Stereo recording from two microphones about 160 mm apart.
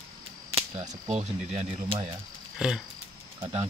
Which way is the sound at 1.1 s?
45° right (ahead or behind).